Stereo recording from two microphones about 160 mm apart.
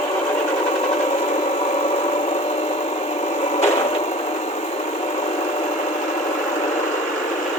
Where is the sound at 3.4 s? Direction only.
40° left (ahead or behind).